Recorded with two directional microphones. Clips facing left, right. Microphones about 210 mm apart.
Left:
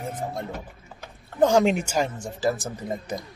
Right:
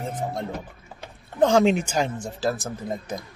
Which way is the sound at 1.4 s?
15° left (ahead or behind).